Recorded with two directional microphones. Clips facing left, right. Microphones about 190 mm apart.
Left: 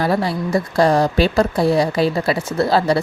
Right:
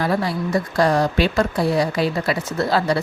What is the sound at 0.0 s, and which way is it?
A woman's voice, 30° left (ahead or behind).